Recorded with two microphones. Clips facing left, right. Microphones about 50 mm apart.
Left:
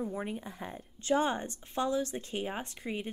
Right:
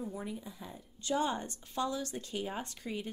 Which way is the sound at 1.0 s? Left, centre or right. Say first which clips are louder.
Left 4 dB; left.